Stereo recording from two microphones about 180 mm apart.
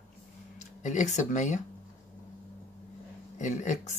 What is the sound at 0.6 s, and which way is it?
Speech, 40° left (ahead or behind).